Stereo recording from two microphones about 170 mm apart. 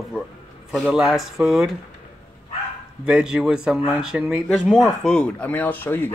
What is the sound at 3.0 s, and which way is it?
Speech, 5° right (ahead or behind).